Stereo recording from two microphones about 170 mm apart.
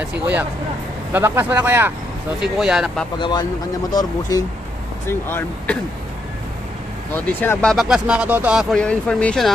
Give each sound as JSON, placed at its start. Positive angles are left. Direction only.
{"t": 0.0, "sound": "speech", "side_deg": -10}
{"t": 3.2, "sound": "speech", "side_deg": 25}
{"t": 7.3, "sound": "speech", "side_deg": 10}
{"t": 8.8, "sound": "speech", "side_deg": 5}